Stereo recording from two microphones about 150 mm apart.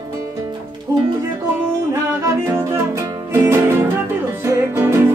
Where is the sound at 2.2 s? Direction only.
20° right (ahead or behind).